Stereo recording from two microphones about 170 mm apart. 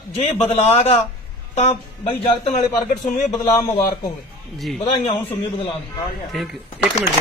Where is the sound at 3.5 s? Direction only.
20° left (ahead or behind).